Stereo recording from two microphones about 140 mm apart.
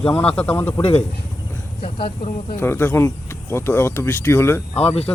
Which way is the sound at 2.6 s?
15° left (ahead or behind).